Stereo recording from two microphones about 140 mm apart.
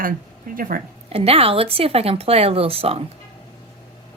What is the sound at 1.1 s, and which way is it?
Speech, 45° right (ahead or behind).